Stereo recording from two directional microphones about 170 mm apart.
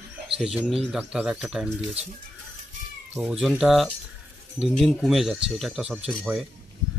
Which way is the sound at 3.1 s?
5° right (ahead or behind).